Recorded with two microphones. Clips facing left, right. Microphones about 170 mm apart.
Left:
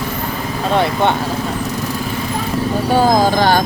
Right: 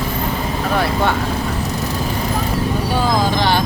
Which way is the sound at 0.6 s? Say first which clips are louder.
Left 4 dB; 25° left (ahead or behind).